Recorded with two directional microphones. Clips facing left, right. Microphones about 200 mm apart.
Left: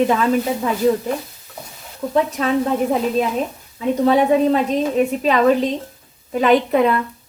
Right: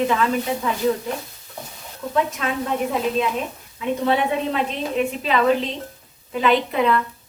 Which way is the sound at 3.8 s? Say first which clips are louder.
Left 5 dB; 40° left (ahead or behind).